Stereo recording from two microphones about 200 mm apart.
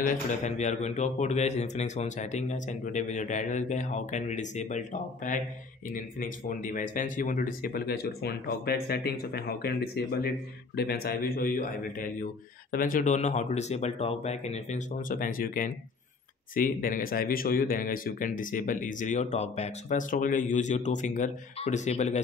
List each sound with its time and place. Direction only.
0.0 s speech: 40° left (ahead or behind)